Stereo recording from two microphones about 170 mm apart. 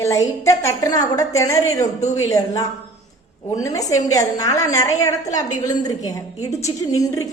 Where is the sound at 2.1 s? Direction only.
20° left (ahead or behind).